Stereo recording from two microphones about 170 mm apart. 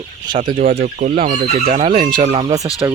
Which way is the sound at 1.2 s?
40° right (ahead or behind).